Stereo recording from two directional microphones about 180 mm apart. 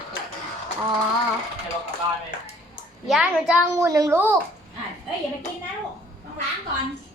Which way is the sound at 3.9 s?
20° right (ahead or behind).